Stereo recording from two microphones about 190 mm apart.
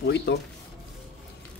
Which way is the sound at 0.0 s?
65° left (ahead or behind).